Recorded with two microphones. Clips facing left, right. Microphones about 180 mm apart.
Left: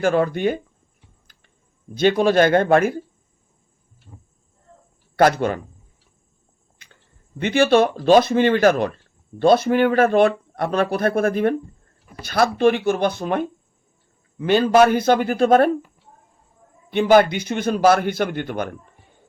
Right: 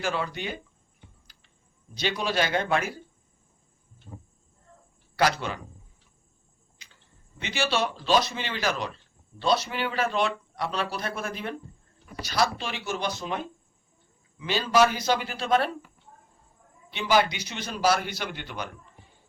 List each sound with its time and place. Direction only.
0.0 s speech: 50° left (ahead or behind)
2.0 s speech: 50° left (ahead or behind)
5.1 s speech: 50° left (ahead or behind)
6.8 s a sound: 55° left (ahead or behind)
7.3 s speech: 55° left (ahead or behind)
16.9 s speech: 55° left (ahead or behind)